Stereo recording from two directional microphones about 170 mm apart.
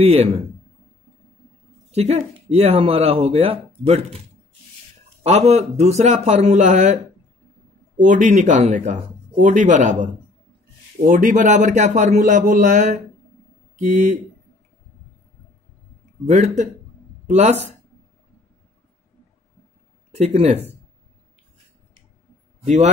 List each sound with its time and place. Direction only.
0.0 s speech: 35° right (ahead or behind)
1.9 s speech: 40° right (ahead or behind)
5.2 s speech: 40° right (ahead or behind)
8.0 s speech: 45° right (ahead or behind)
11.1 s speech: 50° right (ahead or behind)
16.3 s speech: 45° right (ahead or behind)
20.1 s speech: 40° right (ahead or behind)